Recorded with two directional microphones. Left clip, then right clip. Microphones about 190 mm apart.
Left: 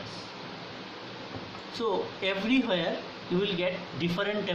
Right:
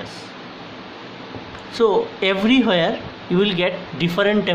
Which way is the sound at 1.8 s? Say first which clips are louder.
Right 13 dB; 55° right (ahead or behind).